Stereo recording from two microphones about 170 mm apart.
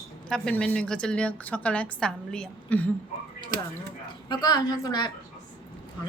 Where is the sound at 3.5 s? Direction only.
65° right (ahead or behind).